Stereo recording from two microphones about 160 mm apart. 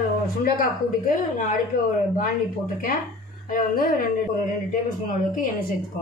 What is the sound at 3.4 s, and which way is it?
Speech, 60° left (ahead or behind).